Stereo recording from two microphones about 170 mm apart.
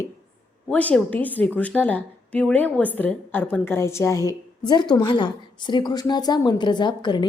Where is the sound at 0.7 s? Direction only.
10° left (ahead or behind).